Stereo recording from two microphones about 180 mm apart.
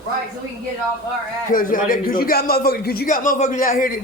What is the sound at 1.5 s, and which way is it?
A man's voice, 50° left (ahead or behind).